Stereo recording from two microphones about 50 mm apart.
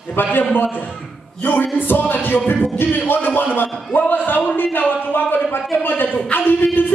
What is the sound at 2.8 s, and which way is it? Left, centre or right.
Speech, left.